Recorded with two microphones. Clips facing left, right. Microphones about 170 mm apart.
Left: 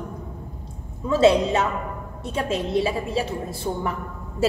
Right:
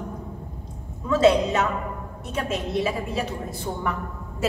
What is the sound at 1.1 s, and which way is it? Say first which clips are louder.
A woman's voice: left 1 dB; 30° left (ahead or behind).